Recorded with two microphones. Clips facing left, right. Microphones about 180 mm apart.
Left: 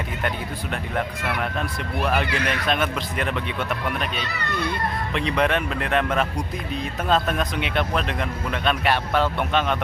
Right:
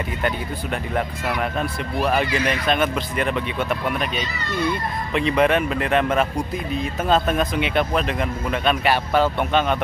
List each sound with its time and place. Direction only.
0.9 s speech: 5° right (ahead or behind)
2.2 s speech: 60° left (ahead or behind)
2.6 s speech: centre (ahead or behind)
4.2 s speech: 65° left (ahead or behind)
5.1 s speech: 5° right (ahead or behind)